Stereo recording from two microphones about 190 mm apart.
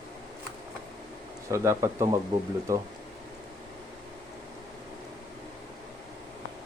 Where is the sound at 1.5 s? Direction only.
15° right (ahead or behind).